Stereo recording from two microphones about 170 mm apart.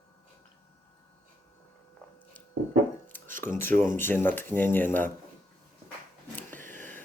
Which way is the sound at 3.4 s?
15° left (ahead or behind).